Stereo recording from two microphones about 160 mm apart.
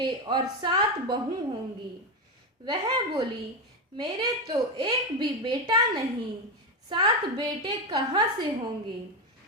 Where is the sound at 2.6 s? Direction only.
25° right (ahead or behind).